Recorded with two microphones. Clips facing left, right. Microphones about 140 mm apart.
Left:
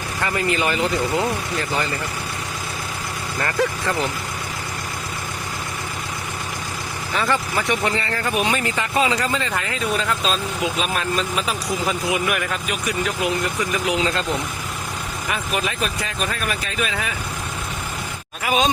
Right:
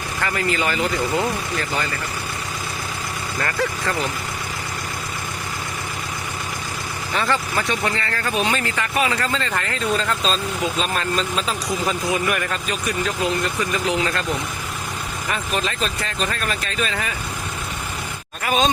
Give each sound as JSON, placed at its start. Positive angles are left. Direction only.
{"t": 0.2, "sound": "speech", "side_deg": 20}
{"t": 3.4, "sound": "speech", "side_deg": 20}
{"t": 7.3, "sound": "speech", "side_deg": 15}
{"t": 15.3, "sound": "speech", "side_deg": 10}
{"t": 18.4, "sound": "speech", "side_deg": 5}